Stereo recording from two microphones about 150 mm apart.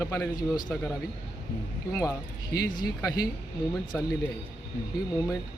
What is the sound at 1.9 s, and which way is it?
Speech, 20° left (ahead or behind).